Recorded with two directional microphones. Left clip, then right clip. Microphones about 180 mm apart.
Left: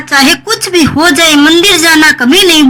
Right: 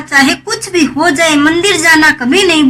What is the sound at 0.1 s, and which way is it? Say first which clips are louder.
A woman's voice: left 3 dB; 25° left (ahead or behind).